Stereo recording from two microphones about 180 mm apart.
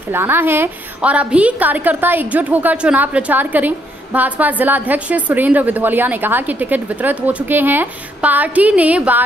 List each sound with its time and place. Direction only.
0.1 s a woman's voice: 10° right (ahead or behind)